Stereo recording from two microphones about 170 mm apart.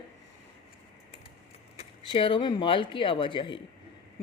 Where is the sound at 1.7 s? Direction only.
30° left (ahead or behind).